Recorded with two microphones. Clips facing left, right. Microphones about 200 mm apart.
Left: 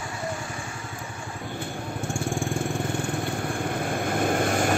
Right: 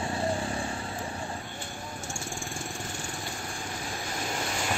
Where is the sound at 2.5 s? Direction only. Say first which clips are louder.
Left 10 dB; 55° left (ahead or behind).